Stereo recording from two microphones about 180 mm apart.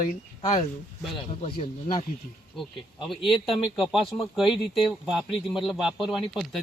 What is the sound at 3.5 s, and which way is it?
Speech, centre (ahead or behind).